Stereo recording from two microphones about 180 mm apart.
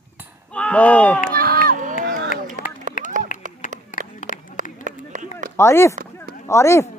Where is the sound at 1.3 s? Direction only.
55° right (ahead or behind).